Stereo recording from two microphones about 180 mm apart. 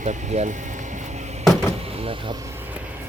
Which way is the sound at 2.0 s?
30° right (ahead or behind).